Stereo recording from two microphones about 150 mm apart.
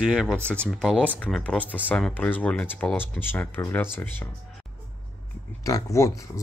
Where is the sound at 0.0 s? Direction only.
5° right (ahead or behind).